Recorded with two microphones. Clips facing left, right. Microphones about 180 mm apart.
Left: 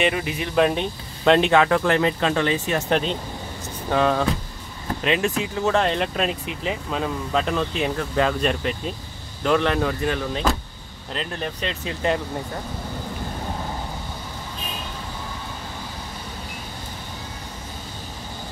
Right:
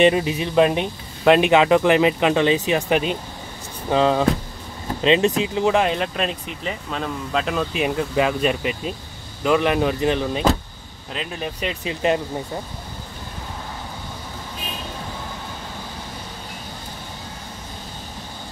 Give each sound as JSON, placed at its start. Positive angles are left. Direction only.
{"t": 0.0, "sound": "speech", "side_deg": -25}
{"t": 0.6, "sound": "speech", "side_deg": -10}
{"t": 7.7, "sound": "speech", "side_deg": -15}
{"t": 11.1, "sound": "speech", "side_deg": -5}
{"t": 11.8, "sound": "speech", "side_deg": -15}